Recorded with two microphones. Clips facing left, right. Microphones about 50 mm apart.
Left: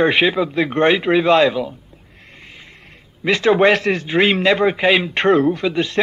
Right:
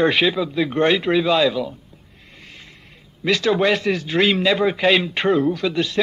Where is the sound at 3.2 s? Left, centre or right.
Left.